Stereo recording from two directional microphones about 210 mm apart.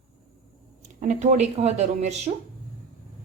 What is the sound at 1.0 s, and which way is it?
A woman's voice, 35° right (ahead or behind).